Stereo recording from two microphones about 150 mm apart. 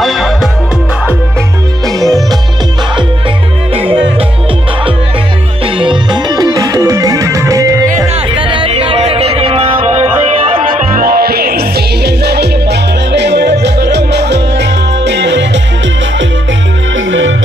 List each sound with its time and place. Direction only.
0.0 s music: centre (ahead or behind)
1.9 s music: 25° right (ahead or behind)
3.7 s music: 35° right (ahead or behind)
5.8 s music: 30° right (ahead or behind)
8.1 s music: 35° right (ahead or behind)
10.8 s music: 70° right (ahead or behind); by 14.3 s 90° right